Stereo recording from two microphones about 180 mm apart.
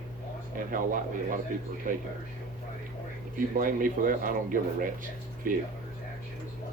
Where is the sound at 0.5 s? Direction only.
50° right (ahead or behind).